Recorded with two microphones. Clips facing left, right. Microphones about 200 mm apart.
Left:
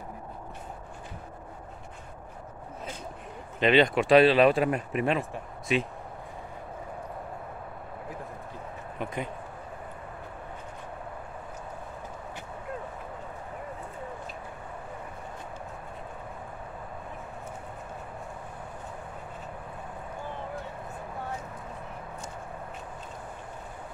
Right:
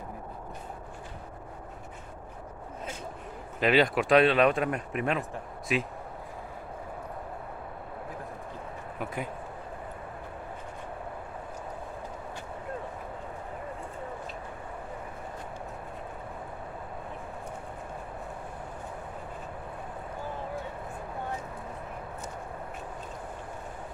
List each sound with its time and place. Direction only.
3.5 s speech: 5° right (ahead or behind)
9.0 s speech: 5° right (ahead or behind)